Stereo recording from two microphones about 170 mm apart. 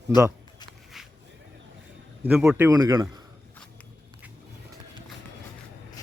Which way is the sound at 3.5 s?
10° left (ahead or behind).